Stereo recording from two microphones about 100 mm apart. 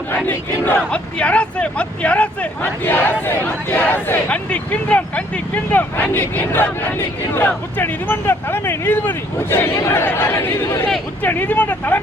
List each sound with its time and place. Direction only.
0.3 s speech: 20° left (ahead or behind)